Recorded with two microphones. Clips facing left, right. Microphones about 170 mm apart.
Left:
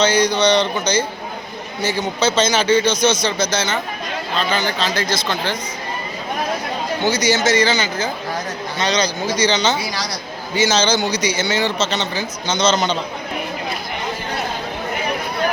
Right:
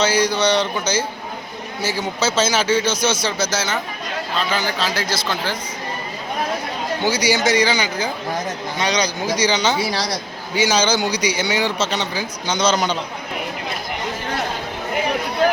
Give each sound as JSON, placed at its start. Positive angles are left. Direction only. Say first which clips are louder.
{"t": 0.0, "sound": "speech", "louder": "left 2 dB", "side_deg": -5}
{"t": 7.0, "sound": "speech", "louder": "left 1 dB", "side_deg": -10}
{"t": 9.8, "sound": "speech", "louder": "right 3 dB", "side_deg": -30}
{"t": 10.5, "sound": "speech", "louder": "left 1 dB", "side_deg": -10}